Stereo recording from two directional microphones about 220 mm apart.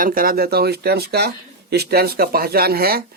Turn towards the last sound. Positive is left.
turn(degrees=-45)  # may be behind; listen again after turning